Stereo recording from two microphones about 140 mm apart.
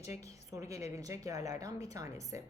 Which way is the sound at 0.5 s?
20° right (ahead or behind).